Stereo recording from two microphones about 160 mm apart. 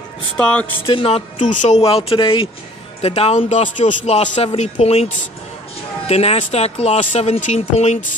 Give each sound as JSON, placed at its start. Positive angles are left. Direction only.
{"t": 0.4, "sound": "speech", "side_deg": 5}
{"t": 0.8, "sound": "speech", "side_deg": 35}
{"t": 1.4, "sound": "speech", "side_deg": 50}